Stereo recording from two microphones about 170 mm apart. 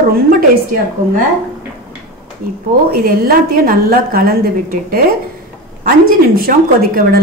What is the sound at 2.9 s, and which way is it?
A woman's voice, 60° right (ahead or behind).